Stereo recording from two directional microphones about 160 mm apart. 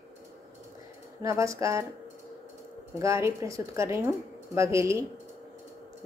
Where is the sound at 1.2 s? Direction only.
20° right (ahead or behind).